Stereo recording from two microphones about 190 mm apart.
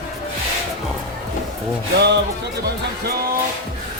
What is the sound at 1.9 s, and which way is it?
Music, 60° right (ahead or behind).